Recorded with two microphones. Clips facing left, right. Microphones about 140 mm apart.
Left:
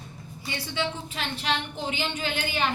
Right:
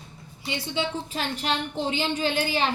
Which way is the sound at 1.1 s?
35° right (ahead or behind).